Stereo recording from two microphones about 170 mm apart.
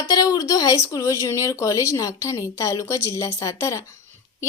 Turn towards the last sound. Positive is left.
turn(degrees=20)  # may be behind; listen again after turning